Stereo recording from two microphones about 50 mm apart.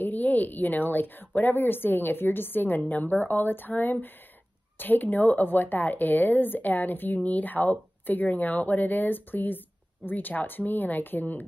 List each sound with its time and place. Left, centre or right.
0.0 s a woman's voice: left